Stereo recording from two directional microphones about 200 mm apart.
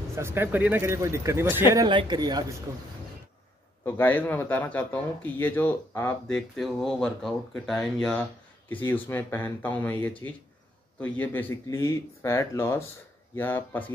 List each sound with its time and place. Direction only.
0.1 s a man's voice: 10° right (ahead or behind)
3.8 s a man's voice: 10° left (ahead or behind)